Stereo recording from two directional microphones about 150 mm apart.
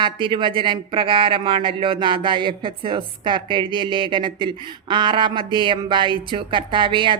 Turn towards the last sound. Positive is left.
turn(degrees=-35)  # may be behind; listen again after turning